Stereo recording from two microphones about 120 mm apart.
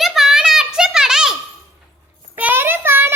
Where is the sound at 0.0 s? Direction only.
Centre (ahead or behind).